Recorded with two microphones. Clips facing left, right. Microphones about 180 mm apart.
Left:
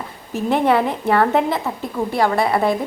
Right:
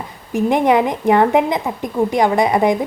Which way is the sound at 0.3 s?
15° right (ahead or behind).